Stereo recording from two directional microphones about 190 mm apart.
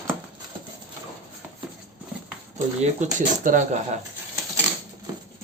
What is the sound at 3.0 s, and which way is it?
Speech, 40° right (ahead or behind).